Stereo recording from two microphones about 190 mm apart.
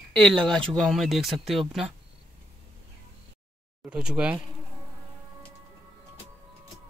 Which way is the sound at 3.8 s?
5° right (ahead or behind).